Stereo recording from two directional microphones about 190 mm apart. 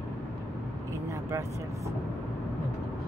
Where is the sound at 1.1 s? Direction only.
15° right (ahead or behind).